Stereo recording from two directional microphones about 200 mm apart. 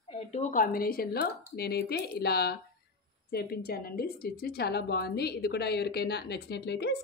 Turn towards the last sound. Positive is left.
turn(degrees=55)  # may be behind; listen again after turning